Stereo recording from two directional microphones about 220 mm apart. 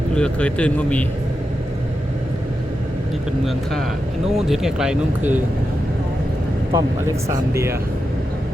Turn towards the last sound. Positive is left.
turn(degrees=-10)  # may be behind; listen again after turning